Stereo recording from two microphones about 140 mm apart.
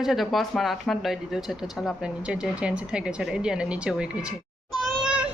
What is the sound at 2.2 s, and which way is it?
A woman's voice, 5° right (ahead or behind).